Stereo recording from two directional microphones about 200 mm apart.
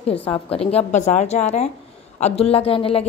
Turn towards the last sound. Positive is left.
turn(degrees=25)  # may be behind; listen again after turning